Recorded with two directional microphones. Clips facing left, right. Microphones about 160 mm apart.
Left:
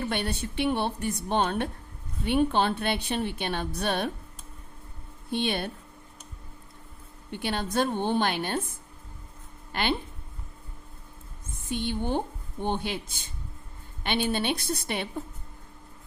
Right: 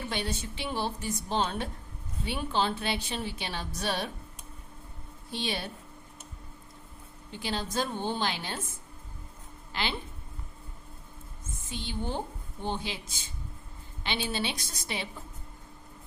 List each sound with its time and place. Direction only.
0.1 s a woman's voice: 60° left (ahead or behind)
5.3 s a woman's voice: 60° left (ahead or behind)
7.3 s a woman's voice: 60° left (ahead or behind)
11.4 s a woman's voice: 60° left (ahead or behind)